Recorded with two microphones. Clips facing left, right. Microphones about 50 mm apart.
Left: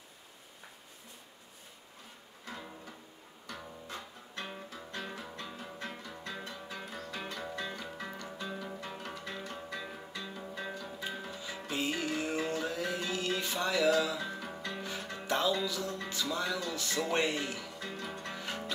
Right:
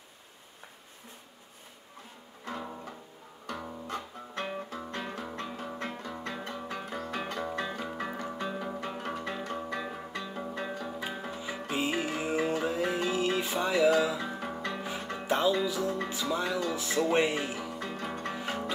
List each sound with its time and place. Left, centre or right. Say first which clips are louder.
2.4 s music: right 7 dB; right
10.6 s music: right 2 dB; right
15.2 s speech: right 4 dB; centre
17.7 s music: right 5 dB; right